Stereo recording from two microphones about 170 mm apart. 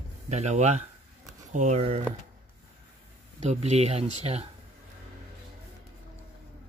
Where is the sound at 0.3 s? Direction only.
40° right (ahead or behind).